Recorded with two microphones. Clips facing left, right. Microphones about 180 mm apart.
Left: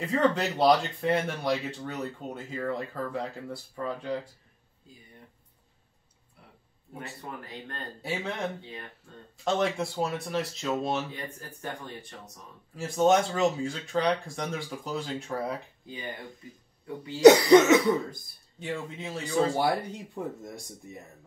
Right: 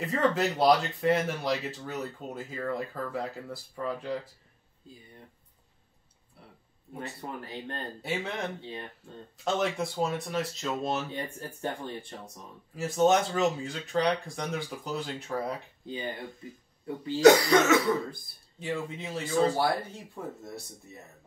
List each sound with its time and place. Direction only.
0.0 s speech: centre (ahead or behind)
7.0 s speech: 30° right (ahead or behind)
8.0 s speech: centre (ahead or behind)
8.5 s speech: 30° right (ahead or behind)
9.4 s speech: centre (ahead or behind)
11.1 s speech: 30° right (ahead or behind)
12.7 s speech: centre (ahead or behind)
16.8 s speech: 30° right (ahead or behind)
17.2 s speech: 20° left (ahead or behind)
18.6 s speech: centre (ahead or behind)